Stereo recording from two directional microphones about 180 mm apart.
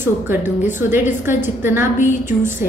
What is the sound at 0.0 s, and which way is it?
A woman's voice, 10° right (ahead or behind).